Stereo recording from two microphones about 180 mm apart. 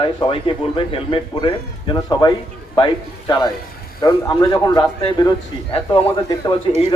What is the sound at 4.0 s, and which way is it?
Speech, 25° left (ahead or behind).